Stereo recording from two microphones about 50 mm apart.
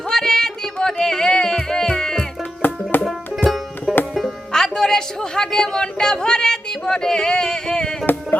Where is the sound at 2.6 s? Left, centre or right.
Left.